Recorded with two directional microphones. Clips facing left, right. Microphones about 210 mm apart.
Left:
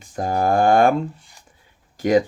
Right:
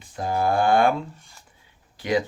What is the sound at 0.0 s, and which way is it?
Speech, 45° left (ahead or behind).